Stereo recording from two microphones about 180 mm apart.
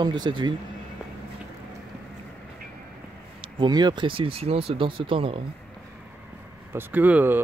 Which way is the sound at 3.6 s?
25° right (ahead or behind).